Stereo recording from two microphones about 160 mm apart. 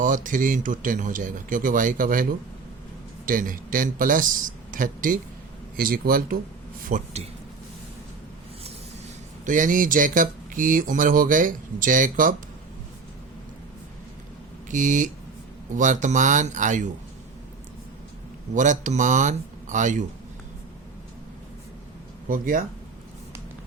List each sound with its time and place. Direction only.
0.0 s speech: 55° right (ahead or behind)
3.2 s speech: 60° right (ahead or behind)
9.5 s speech: 55° right (ahead or behind)
14.7 s speech: 50° right (ahead or behind)
18.5 s speech: 50° right (ahead or behind)
22.3 s speech: 60° right (ahead or behind)